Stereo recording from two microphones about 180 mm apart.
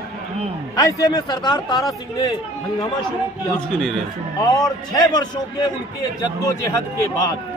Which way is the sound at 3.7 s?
Centre (ahead or behind).